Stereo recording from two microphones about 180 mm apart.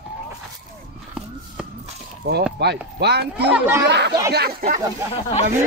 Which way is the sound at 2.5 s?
65° right (ahead or behind).